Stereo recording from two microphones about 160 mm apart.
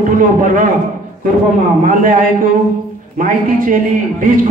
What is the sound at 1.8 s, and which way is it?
A woman's voice, 55° right (ahead or behind).